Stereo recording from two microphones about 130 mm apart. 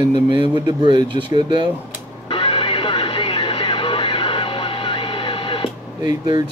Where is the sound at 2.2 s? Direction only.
40° left (ahead or behind).